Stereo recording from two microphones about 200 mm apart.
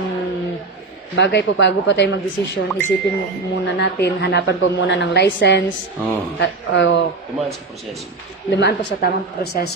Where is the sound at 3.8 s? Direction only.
60° left (ahead or behind).